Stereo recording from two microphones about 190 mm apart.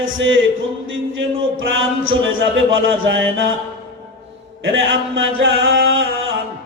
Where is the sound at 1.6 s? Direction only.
90° right.